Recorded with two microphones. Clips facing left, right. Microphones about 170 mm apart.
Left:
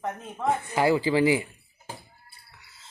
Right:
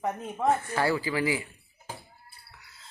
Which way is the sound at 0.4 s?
15° left (ahead or behind).